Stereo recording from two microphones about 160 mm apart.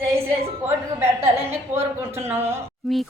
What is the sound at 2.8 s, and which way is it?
Speech, centre (ahead or behind).